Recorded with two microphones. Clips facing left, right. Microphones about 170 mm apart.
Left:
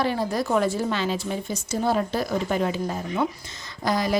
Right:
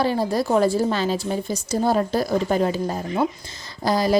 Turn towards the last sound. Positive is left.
turn(degrees=-35)  # may be behind; listen again after turning